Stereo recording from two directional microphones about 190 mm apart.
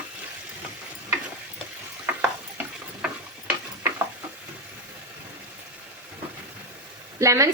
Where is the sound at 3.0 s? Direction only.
10° right (ahead or behind).